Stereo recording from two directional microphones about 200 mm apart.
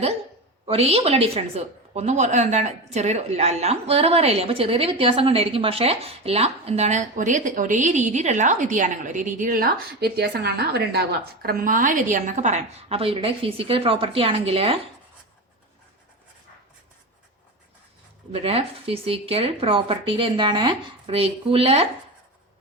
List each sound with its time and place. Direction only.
0.6 s a woman's voice: 30° right (ahead or behind); by 11.0 s 55° right (ahead or behind)
11.4 s speech: 45° right (ahead or behind); by 14.8 s 30° right (ahead or behind)
18.3 s speech: 30° right (ahead or behind)